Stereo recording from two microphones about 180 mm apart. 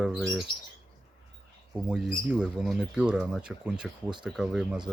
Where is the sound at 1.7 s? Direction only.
5° right (ahead or behind).